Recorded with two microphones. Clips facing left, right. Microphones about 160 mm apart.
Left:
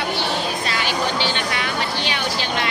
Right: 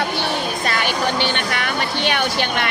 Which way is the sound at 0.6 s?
55° right (ahead or behind).